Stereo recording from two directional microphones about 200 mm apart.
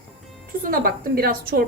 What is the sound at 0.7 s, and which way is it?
Speech, 45° right (ahead or behind).